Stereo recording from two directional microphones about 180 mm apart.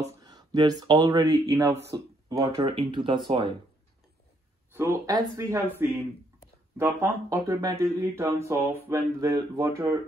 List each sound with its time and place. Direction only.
0.2 s speech: 20° right (ahead or behind)
4.7 s speech: 15° right (ahead or behind)